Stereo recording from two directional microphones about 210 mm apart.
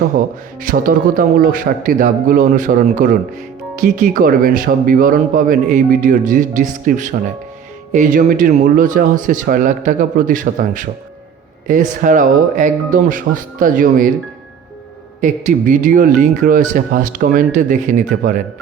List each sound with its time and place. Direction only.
0.6 s speech: 40° right (ahead or behind)
15.2 s speech: 40° right (ahead or behind)